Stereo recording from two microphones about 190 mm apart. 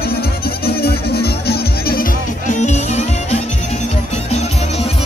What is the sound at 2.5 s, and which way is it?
Music, 40° left (ahead or behind).